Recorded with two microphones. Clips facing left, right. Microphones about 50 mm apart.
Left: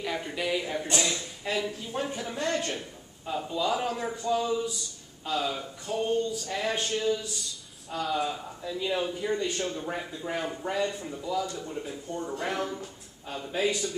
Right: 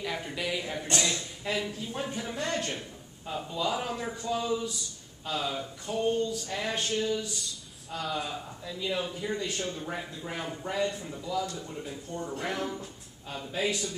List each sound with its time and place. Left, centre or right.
0.0 s speech: centre
0.9 s speech: left
1.4 s speech: centre